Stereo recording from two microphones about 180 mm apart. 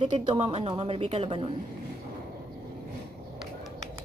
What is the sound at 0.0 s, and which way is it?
A woman's voice, 25° right (ahead or behind).